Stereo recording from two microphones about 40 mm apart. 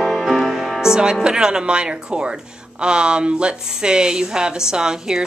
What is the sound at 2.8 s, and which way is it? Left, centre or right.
Speech, right.